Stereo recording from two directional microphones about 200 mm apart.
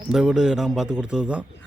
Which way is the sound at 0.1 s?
5° right (ahead or behind).